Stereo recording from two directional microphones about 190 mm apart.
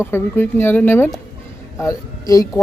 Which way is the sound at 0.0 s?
10° left (ahead or behind).